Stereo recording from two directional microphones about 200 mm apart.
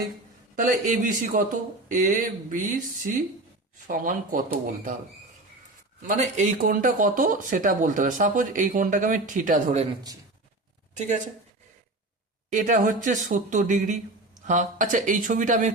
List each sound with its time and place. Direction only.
0.5 s speech: 40° right (ahead or behind)
3.8 s speech: 45° right (ahead or behind)
6.1 s speech: 35° right (ahead or behind)
10.9 s speech: 35° right (ahead or behind)
12.5 s speech: 40° right (ahead or behind)